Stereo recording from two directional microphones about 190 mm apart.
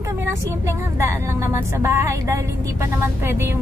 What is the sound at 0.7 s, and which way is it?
A woman's voice, 15° right (ahead or behind).